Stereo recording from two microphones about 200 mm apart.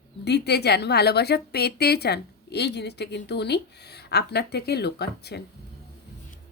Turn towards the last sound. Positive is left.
turn(degrees=55)  # may be behind; listen again after turning